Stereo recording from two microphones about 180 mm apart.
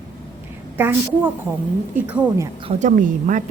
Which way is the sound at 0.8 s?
10° right (ahead or behind).